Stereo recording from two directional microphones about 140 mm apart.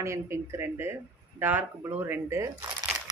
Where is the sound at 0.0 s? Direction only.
20° right (ahead or behind).